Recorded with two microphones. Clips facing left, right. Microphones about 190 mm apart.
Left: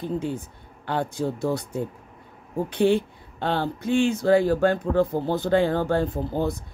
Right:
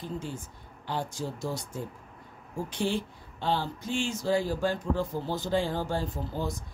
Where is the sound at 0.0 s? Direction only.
60° left (ahead or behind).